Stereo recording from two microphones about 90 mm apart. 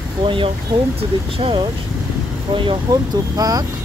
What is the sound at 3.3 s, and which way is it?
Speech, 45° right (ahead or behind).